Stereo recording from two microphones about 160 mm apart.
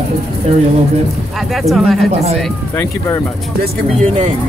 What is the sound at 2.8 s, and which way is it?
Speech, 15° left (ahead or behind).